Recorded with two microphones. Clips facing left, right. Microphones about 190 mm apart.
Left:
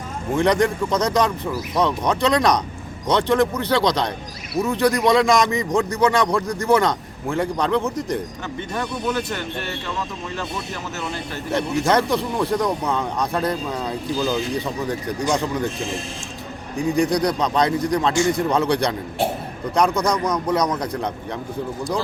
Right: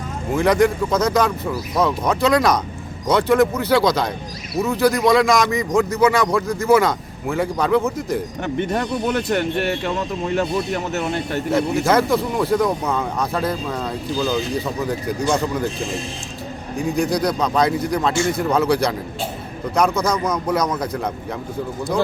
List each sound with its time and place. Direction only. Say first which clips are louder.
0.3 s speech: right 2 dB; 5° right (ahead or behind)
8.7 s speech: even; 60° right (ahead or behind)
11.5 s speech: right 2 dB; 5° right (ahead or behind)
16.9 s speech: left 1 dB; centre (ahead or behind)